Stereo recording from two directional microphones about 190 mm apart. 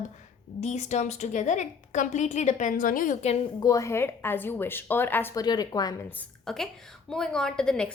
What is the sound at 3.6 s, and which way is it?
Speech, 20° left (ahead or behind).